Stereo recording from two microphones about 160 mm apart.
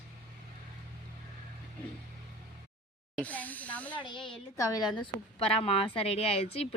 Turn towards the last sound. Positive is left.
turn(degrees=40)  # may be behind; listen again after turning